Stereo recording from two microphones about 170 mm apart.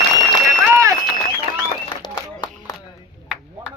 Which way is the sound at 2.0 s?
25° left (ahead or behind).